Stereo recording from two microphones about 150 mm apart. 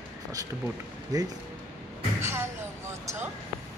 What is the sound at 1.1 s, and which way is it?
Speech, 25° right (ahead or behind).